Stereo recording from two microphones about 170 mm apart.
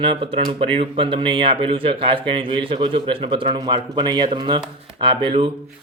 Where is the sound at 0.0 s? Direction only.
30° right (ahead or behind).